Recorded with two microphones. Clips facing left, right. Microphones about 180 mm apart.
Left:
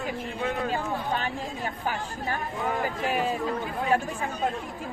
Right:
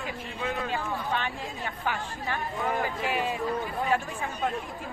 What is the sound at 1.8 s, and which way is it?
Speech, 40° left (ahead or behind).